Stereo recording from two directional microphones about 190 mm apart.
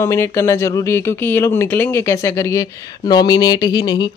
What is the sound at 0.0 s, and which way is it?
Speech, 15° left (ahead or behind).